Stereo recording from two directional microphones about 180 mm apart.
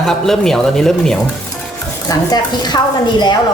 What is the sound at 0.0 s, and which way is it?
A man's voice, centre (ahead or behind).